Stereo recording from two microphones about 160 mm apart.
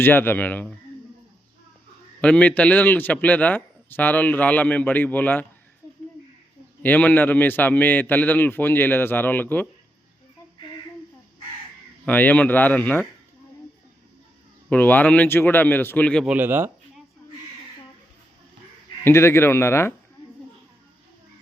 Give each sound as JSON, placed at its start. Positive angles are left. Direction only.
{"t": 0.0, "sound": "a man's voice", "side_deg": 15}
{"t": 2.2, "sound": "a man's voice", "side_deg": 10}
{"t": 6.8, "sound": "a man's voice", "side_deg": 10}
{"t": 12.0, "sound": "a man's voice", "side_deg": 10}
{"t": 14.7, "sound": "a man's voice", "side_deg": 10}
{"t": 16.2, "sound": "speech", "side_deg": -10}
{"t": 19.0, "sound": "a man's voice", "side_deg": 15}